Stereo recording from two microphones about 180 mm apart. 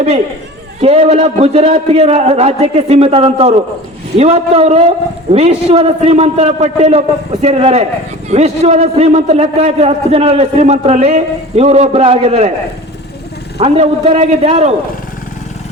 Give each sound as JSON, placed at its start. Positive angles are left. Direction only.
{"t": 0.8, "sound": "a man's voice", "side_deg": -35}
{"t": 13.6, "sound": "a man's voice", "side_deg": -35}